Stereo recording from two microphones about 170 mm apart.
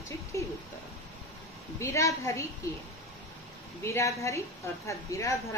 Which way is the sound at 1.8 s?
15° left (ahead or behind).